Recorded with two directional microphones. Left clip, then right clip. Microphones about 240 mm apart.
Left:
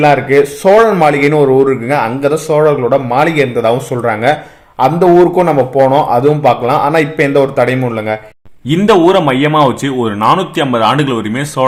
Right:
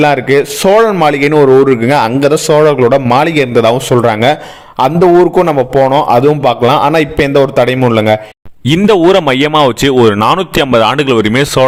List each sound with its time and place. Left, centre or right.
0.0 s a man's voice: right